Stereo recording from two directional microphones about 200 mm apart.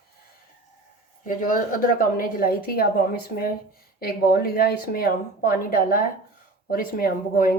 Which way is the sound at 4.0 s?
50° left (ahead or behind).